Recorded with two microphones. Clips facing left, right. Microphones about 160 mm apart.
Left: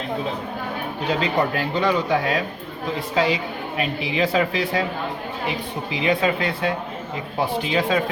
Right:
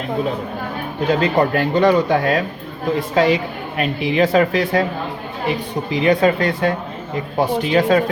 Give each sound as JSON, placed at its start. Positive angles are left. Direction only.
{"t": 1.2, "sound": "a woman's voice", "side_deg": -50}